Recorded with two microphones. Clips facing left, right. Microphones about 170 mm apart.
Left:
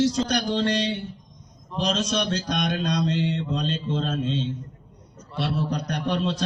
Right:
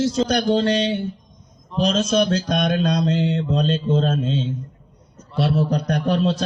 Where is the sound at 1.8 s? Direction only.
45° right (ahead or behind).